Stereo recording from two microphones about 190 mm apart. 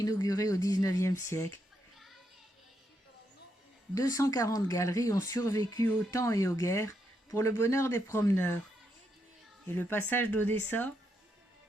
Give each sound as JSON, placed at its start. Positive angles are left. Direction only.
{"t": 0.0, "sound": "speech", "side_deg": 20}
{"t": 3.9, "sound": "speech", "side_deg": 20}
{"t": 9.7, "sound": "speech", "side_deg": 10}